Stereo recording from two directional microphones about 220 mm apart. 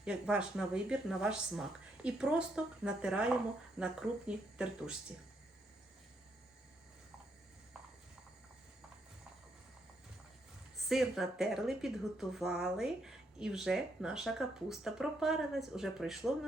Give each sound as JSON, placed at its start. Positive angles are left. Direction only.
{"t": 0.0, "sound": "speech", "side_deg": -5}
{"t": 10.8, "sound": "speech", "side_deg": 0}